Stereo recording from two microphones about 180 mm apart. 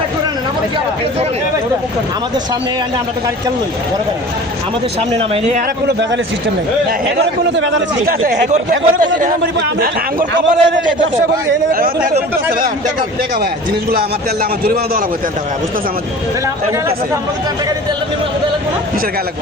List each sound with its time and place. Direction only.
5.1 s a man's voice: 35° right (ahead or behind)
7.2 s a man's voice: 80° right
8.0 s a man's voice: 45° right (ahead or behind)
10.3 s a man's voice: 90° right
14.6 s a man's voice: 55° right (ahead or behind)